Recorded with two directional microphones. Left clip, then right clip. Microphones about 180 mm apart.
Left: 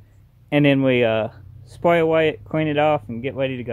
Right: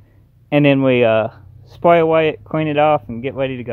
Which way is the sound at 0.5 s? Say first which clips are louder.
Right 4 dB; 20° right (ahead or behind).